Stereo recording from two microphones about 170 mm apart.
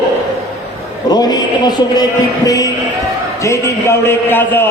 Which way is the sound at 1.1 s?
25° left (ahead or behind).